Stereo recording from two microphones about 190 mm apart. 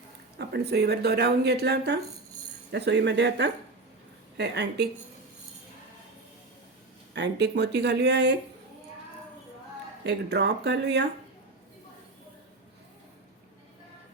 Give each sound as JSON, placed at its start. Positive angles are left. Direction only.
{"t": 0.3, "sound": "speech", "side_deg": -60}
{"t": 7.1, "sound": "speech", "side_deg": -65}
{"t": 10.1, "sound": "speech", "side_deg": -60}